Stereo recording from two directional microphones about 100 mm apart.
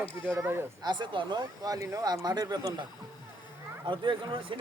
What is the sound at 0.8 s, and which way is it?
Speech, 50° right (ahead or behind).